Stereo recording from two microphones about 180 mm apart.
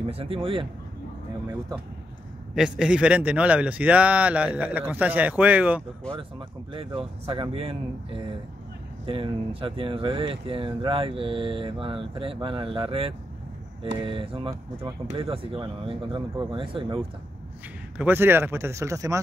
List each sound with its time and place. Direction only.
0.0 s speech: 30° right (ahead or behind)
2.5 s a man's voice: 5° right (ahead or behind)
6.7 s speech: 30° right (ahead or behind)
17.9 s a man's voice: 10° right (ahead or behind)